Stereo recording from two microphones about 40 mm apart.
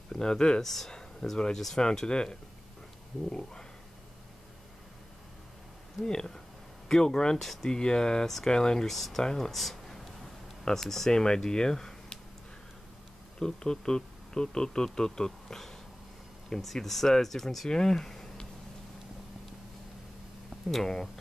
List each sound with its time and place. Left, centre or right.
0.1 s speech: centre
0.6 s speech: centre
3.3 s speech: centre
6.0 s speech: centre
8.8 s speech: centre
9.2 s speech: centre
9.5 s a sound: centre
10.6 s speech: centre
13.4 s speech: centre
15.4 s a sound: centre
16.4 s speech: centre
20.7 s speech: centre